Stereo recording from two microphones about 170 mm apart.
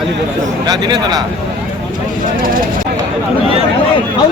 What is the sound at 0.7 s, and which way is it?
Speech, 25° right (ahead or behind).